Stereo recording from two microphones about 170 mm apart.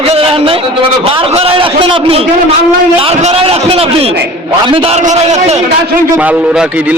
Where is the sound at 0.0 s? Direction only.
35° right (ahead or behind).